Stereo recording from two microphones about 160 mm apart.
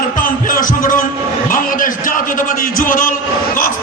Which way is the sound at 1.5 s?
60° left (ahead or behind).